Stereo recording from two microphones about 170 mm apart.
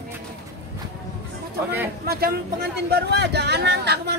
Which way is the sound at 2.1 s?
65° right (ahead or behind).